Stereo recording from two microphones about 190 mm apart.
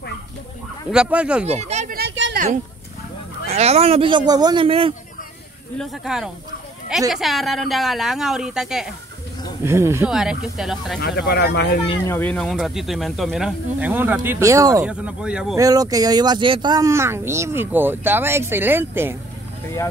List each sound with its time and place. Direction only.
0.9 s speech: 5° right (ahead or behind)
1.4 s speech: 35° right (ahead or behind)
2.0 s a sound: 65° right (ahead or behind)
2.3 s a sound: 40° right (ahead or behind)
3.4 s a man's voice: 35° right (ahead or behind)
5.8 s speech: 5° right (ahead or behind)
9.7 s speech: 15° right (ahead or behind)
10.0 s speech: 5° right (ahead or behind)
11.0 s speech: 55° left (ahead or behind)
12.1 s speech: 10° left (ahead or behind); by 14.9 s 15° right (ahead or behind)
14.9 s speech: 5° right (ahead or behind)
15.5 s speech: 20° right (ahead or behind)